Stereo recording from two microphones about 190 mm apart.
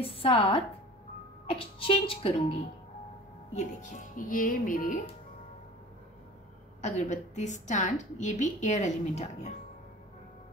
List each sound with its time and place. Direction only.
0.0 s a woman's voice: 30° left (ahead or behind)
3.5 s speech: 40° left (ahead or behind)
6.8 s a woman's voice: 40° left (ahead or behind)